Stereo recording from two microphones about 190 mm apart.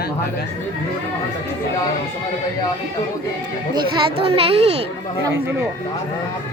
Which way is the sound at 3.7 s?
30° right (ahead or behind).